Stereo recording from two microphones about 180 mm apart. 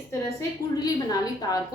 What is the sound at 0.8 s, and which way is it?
Speech, 20° left (ahead or behind).